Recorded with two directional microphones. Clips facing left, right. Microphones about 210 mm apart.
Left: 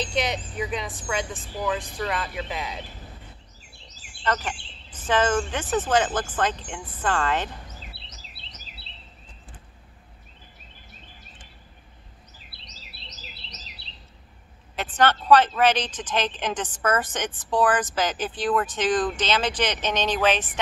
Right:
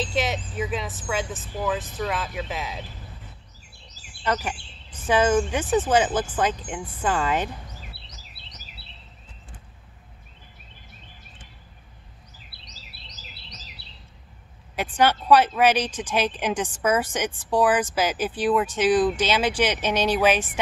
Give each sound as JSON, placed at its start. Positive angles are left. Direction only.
{"t": 0.0, "sound": "speech", "side_deg": 0}
{"t": 4.0, "sound": "speech", "side_deg": -10}
{"t": 14.8, "sound": "speech", "side_deg": -10}